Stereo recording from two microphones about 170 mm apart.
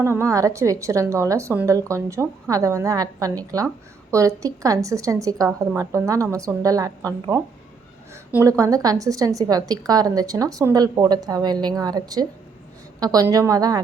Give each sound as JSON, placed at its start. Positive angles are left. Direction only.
{"t": 0.0, "sound": "a woman's voice", "side_deg": -15}